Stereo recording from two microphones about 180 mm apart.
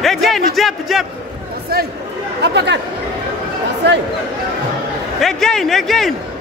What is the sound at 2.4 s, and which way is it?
Speech, 70° right (ahead or behind).